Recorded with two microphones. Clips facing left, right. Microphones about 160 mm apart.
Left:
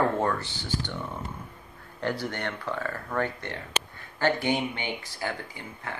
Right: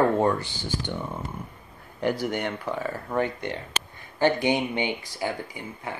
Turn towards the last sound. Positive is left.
turn(degrees=-15)  # may be behind; listen again after turning